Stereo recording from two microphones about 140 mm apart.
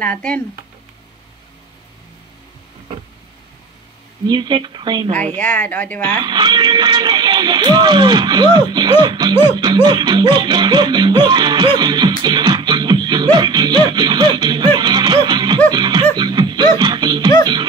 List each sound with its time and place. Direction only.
0.0 s a woman's voice: 10° left (ahead or behind)
4.3 s speech: 35° right (ahead or behind)
5.1 s a woman's voice: 10° left (ahead or behind)
6.2 s speech: 30° right (ahead or behind)